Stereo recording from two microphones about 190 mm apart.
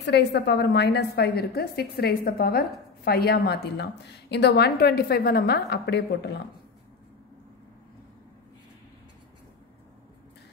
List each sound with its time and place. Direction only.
0.0 s a woman's voice: 65° left (ahead or behind)